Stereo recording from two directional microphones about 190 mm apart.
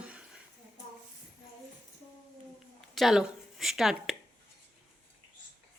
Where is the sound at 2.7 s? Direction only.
Centre (ahead or behind).